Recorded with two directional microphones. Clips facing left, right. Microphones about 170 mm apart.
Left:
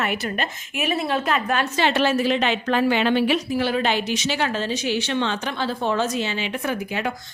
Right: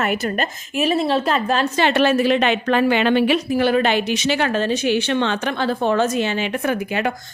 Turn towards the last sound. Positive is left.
turn(degrees=-55)  # may be behind; listen again after turning